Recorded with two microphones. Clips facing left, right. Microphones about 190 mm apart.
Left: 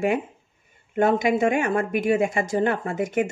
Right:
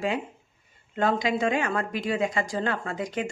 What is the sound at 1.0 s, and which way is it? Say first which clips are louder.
A woman's voice: left 4 dB; 25° left (ahead or behind).